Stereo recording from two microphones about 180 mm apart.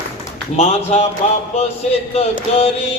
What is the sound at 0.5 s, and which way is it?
Mantra, 35° left (ahead or behind).